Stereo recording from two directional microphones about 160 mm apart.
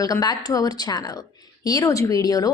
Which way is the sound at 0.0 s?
25° left (ahead or behind).